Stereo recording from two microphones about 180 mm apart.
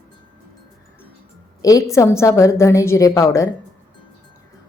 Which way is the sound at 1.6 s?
20° left (ahead or behind).